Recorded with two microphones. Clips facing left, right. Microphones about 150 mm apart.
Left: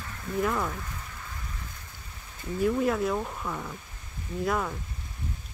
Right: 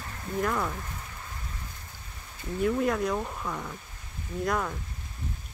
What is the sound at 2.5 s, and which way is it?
Speech, centre (ahead or behind).